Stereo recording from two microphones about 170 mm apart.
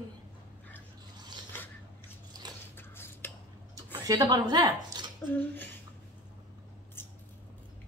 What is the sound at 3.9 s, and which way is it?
A woman's voice, 25° right (ahead or behind).